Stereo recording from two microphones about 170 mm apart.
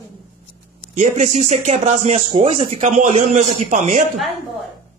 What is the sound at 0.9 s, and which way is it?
Speech, 45° right (ahead or behind).